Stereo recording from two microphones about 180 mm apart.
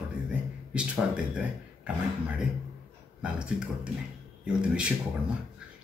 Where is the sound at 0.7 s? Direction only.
5° right (ahead or behind).